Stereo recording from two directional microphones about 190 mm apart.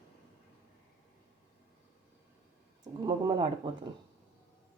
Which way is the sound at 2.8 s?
20° right (ahead or behind).